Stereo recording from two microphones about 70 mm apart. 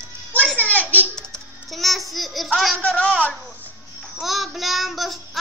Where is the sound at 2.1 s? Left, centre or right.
Centre.